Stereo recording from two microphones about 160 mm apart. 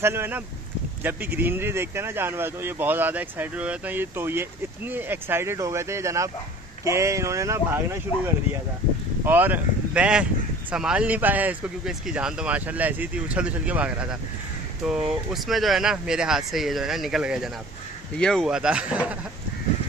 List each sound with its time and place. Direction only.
0.0 s speech: 15° right (ahead or behind)